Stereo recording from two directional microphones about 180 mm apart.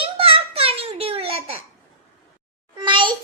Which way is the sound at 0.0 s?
30° right (ahead or behind).